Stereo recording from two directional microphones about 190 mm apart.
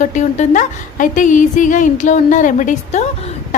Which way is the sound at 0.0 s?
40° left (ahead or behind).